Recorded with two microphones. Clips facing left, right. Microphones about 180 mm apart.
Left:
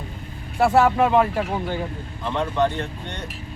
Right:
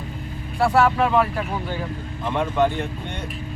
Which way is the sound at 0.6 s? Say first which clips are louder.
Left 1 dB; 20° left (ahead or behind).